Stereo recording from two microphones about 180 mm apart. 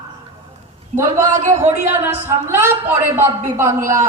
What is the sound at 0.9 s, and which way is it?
Speech, 35° right (ahead or behind).